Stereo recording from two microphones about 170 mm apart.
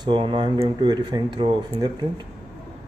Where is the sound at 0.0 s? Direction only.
25° right (ahead or behind).